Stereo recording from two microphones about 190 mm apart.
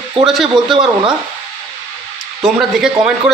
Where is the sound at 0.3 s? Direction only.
Centre (ahead or behind).